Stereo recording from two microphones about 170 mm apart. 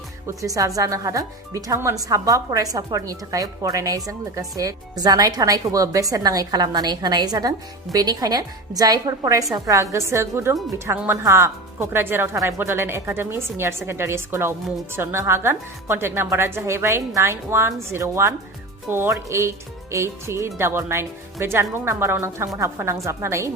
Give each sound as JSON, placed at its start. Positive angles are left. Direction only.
{"t": 0.4, "sound": "speech", "side_deg": -20}